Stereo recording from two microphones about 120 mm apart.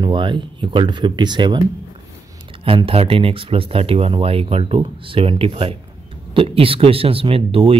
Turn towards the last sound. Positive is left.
turn(degrees=-50)  # may be behind; listen again after turning